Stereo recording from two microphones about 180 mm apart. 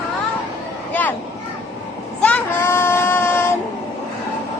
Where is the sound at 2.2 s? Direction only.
10° left (ahead or behind).